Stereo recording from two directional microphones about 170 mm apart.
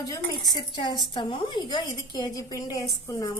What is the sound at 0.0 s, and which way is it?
A woman's voice, 20° left (ahead or behind).